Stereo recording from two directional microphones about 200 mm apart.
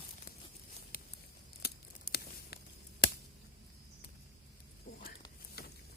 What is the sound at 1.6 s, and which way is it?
Scissors, 50° left (ahead or behind).